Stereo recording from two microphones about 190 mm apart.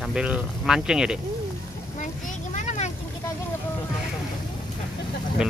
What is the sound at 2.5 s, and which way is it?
Vehicle, 40° left (ahead or behind).